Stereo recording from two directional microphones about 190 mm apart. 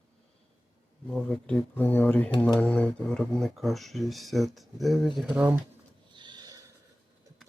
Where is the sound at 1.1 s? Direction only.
5° left (ahead or behind).